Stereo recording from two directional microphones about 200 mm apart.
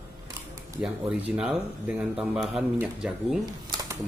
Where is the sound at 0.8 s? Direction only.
5° right (ahead or behind).